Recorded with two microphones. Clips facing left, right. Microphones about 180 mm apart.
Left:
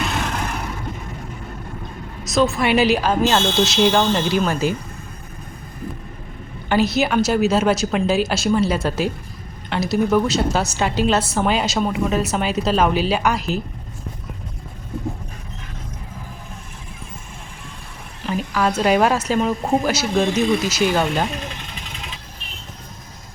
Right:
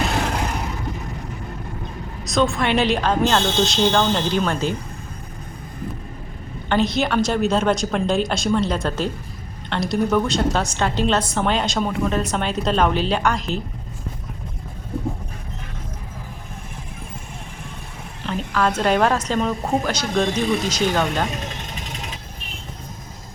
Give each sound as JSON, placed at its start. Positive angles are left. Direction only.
{"t": 2.2, "sound": "a woman's voice", "side_deg": 0}
{"t": 6.7, "sound": "a woman's voice", "side_deg": 5}
{"t": 18.3, "sound": "a woman's voice", "side_deg": 10}
{"t": 21.7, "sound": "vehicle", "side_deg": -45}